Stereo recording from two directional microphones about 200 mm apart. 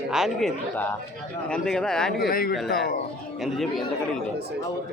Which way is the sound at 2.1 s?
50° left (ahead or behind).